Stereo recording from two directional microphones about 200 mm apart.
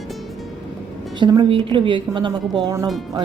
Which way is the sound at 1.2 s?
25° right (ahead or behind).